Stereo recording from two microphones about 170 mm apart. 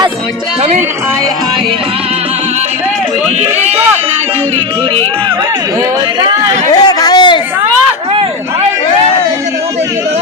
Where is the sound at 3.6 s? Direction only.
35° right (ahead or behind).